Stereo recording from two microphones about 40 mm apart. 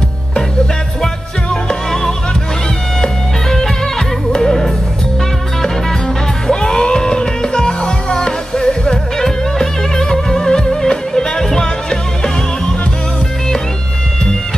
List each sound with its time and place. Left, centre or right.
1.0 s music: centre
6.4 s music: centre